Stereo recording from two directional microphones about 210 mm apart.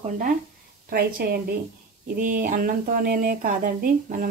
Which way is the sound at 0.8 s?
45° right (ahead or behind).